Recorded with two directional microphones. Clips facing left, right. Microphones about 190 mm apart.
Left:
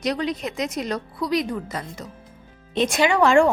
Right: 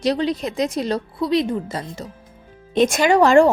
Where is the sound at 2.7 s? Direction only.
50° right (ahead or behind).